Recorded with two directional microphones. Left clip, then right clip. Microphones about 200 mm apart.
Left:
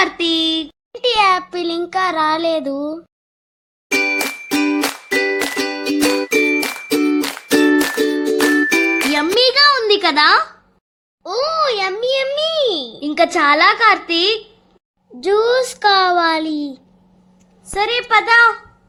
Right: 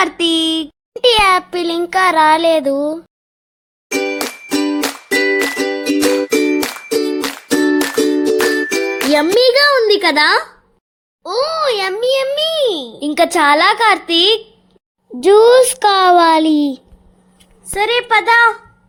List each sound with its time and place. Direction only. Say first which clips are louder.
0.0 s a child's voice: right 2 dB; 15° right (ahead or behind)
3.8 s music: left 2 dB; 5° right (ahead or behind)
9.1 s a child's voice: right 5 dB; 20° right (ahead or behind)
17.7 s a child's voice: right 2 dB; 15° right (ahead or behind)